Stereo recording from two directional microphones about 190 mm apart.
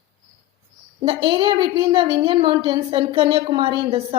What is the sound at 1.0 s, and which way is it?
A woman's voice, 25° right (ahead or behind).